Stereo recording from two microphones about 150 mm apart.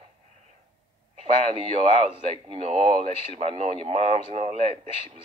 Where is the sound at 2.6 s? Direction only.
45° right (ahead or behind).